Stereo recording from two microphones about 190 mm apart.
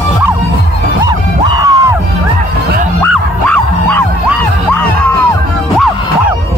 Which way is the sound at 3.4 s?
5° left (ahead or behind).